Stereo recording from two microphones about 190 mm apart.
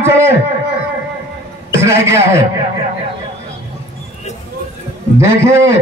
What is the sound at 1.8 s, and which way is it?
Speech, 15° right (ahead or behind).